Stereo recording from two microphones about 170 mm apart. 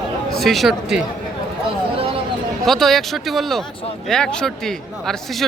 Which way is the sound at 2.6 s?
Centre (ahead or behind).